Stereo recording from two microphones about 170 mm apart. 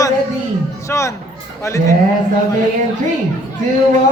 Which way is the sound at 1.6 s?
20° left (ahead or behind).